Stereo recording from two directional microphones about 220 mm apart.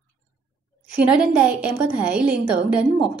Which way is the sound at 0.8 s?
5° right (ahead or behind).